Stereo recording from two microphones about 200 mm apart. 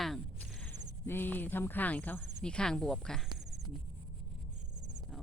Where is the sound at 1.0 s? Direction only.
10° left (ahead or behind).